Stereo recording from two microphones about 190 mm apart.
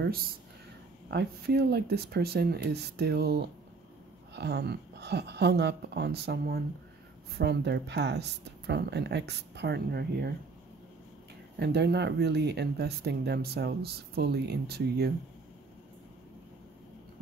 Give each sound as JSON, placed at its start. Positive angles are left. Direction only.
{"t": 0.0, "sound": "speech", "side_deg": -50}
{"t": 11.6, "sound": "speech", "side_deg": -60}